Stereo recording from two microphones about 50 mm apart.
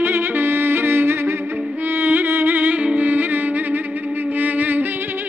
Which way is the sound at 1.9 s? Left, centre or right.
Right.